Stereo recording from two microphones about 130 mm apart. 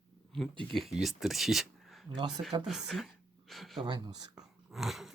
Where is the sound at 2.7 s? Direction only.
5° right (ahead or behind).